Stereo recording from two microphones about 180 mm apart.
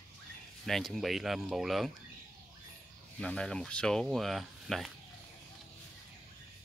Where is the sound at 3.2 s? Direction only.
5° left (ahead or behind).